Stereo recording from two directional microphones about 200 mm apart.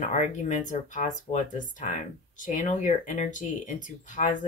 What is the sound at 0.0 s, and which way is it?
Speech, 35° left (ahead or behind).